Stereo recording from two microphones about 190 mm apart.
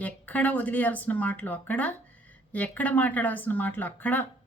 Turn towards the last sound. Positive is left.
turn(degrees=10)  # may be behind; listen again after turning